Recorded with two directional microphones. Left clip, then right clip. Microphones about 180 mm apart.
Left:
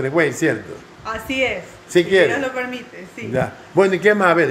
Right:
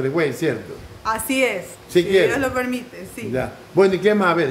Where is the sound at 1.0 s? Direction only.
35° right (ahead or behind).